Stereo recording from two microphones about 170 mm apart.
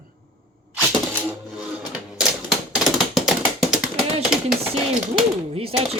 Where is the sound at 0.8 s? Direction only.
10° right (ahead or behind).